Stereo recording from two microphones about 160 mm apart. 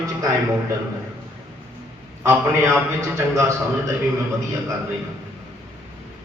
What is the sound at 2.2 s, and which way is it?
A man's voice, 15° right (ahead or behind).